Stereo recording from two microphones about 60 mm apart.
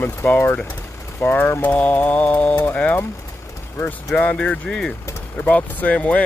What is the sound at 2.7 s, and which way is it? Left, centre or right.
Speech, left.